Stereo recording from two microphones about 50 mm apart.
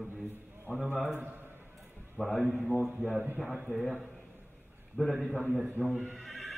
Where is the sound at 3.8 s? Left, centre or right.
Centre.